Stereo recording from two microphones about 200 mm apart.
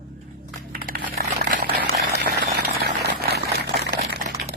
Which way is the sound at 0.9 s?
50° right (ahead or behind).